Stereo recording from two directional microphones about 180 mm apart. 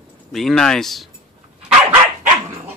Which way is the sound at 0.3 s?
Centre (ahead or behind).